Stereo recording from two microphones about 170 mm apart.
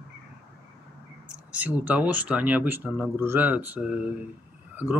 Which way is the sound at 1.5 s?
10° right (ahead or behind).